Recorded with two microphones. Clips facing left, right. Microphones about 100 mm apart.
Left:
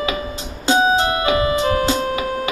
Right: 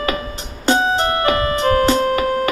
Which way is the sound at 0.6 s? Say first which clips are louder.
Left 1 dB; 50° right (ahead or behind).